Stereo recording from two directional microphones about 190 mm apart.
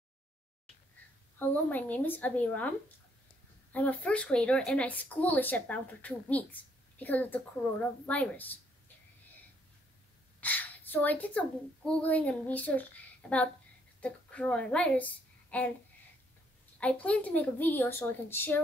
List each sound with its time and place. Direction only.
1.7 s speech: 10° left (ahead or behind)
3.7 s a woman's voice: 5° left (ahead or behind)
10.4 s a woman's voice: 10° left (ahead or behind)
16.8 s speech: 5° left (ahead or behind)